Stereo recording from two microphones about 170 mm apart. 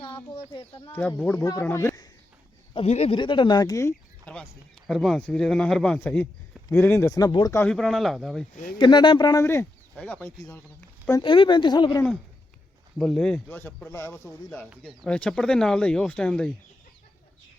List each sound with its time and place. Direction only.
0.0 s speech: 30° left (ahead or behind)
0.9 s speech: 10° left (ahead or behind)
2.7 s speech: 40° left (ahead or behind); by 4.4 s 15° left (ahead or behind)
4.9 s speech: centre (ahead or behind); by 7.6 s 20° left (ahead or behind)
7.6 s speech: 5° left (ahead or behind)
8.8 s speech: 25° left (ahead or behind)
11.2 s speech: 30° left (ahead or behind)
13.0 s speech: centre (ahead or behind)